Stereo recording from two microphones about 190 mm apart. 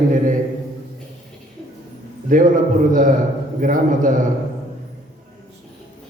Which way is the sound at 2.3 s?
45° right (ahead or behind).